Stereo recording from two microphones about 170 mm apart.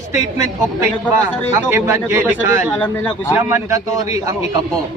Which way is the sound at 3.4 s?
15° right (ahead or behind).